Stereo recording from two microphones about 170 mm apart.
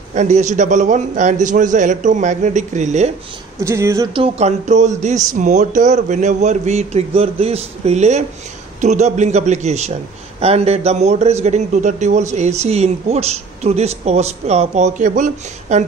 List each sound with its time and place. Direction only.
0.1 s a man's voice: 45° right (ahead or behind)
3.6 s speech: 15° right (ahead or behind)
4.1 s a man's voice: 35° right (ahead or behind)